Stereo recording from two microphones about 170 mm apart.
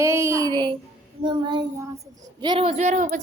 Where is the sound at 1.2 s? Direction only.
25° right (ahead or behind).